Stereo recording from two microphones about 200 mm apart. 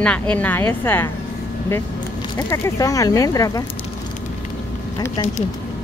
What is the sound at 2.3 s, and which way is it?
Speech, 15° left (ahead or behind).